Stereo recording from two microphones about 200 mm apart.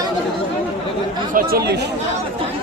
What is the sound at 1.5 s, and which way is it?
Speech, 55° right (ahead or behind).